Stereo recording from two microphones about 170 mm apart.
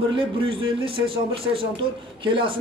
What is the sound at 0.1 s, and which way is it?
A man's voice, 30° right (ahead or behind).